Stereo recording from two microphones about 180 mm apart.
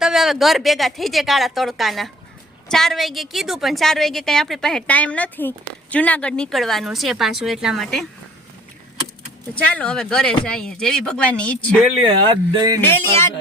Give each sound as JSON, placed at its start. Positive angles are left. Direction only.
{"t": 0.0, "sound": "a woman's voice", "side_deg": 0}
{"t": 9.7, "sound": "a woman's voice", "side_deg": 5}
{"t": 12.0, "sound": "speech", "side_deg": -25}